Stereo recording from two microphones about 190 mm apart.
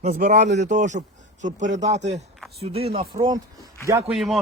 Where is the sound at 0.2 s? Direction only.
40° right (ahead or behind); by 3.4 s 20° right (ahead or behind).